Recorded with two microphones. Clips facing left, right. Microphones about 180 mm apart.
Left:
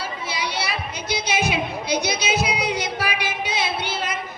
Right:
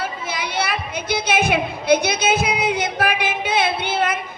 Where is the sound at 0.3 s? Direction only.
55° right (ahead or behind).